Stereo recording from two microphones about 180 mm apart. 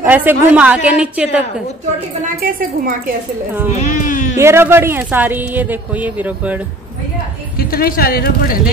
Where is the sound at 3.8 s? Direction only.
45° left (ahead or behind).